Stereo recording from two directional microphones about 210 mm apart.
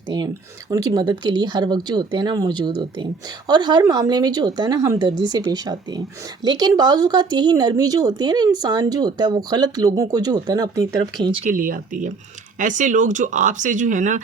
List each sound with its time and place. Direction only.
0.7 s speech: 15° right (ahead or behind)
11.5 s speech: 40° right (ahead or behind)